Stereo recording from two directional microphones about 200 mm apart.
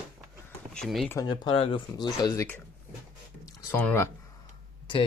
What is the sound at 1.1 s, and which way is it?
Speech, 20° left (ahead or behind).